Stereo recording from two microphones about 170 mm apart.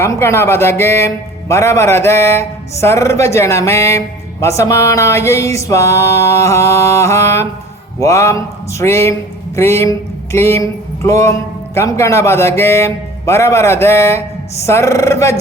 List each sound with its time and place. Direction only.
0.0 s speech: 15° left (ahead or behind)